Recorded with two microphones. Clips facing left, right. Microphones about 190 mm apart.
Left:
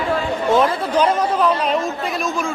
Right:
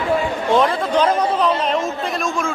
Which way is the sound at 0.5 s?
5° left (ahead or behind).